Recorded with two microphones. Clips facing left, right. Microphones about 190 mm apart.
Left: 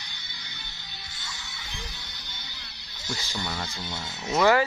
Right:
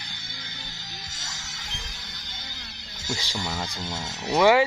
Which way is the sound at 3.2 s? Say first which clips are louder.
Right 2 dB; 90° right.